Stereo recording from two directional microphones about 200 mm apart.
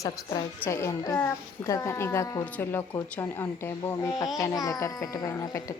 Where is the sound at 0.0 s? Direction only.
15° left (ahead or behind).